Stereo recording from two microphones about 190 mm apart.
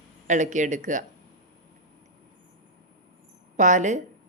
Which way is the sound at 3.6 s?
40° right (ahead or behind).